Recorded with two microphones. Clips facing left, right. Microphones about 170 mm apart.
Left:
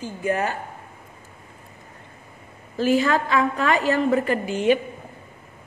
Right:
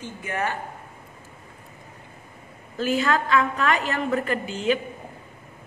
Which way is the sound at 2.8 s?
40° left (ahead or behind).